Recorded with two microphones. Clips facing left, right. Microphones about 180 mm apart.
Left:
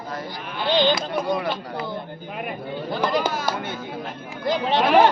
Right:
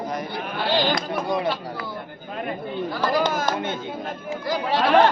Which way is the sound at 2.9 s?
20° left (ahead or behind).